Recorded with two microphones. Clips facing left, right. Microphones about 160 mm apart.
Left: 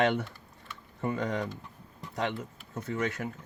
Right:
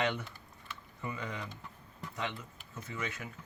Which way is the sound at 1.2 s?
45° left (ahead or behind).